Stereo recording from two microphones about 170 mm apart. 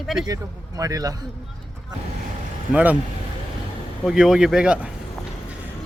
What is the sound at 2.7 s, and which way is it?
Speech, 10° right (ahead or behind).